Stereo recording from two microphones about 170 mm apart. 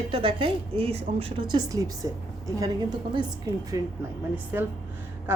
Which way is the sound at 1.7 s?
20° right (ahead or behind).